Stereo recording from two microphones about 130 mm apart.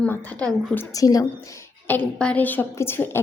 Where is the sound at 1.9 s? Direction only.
10° left (ahead or behind).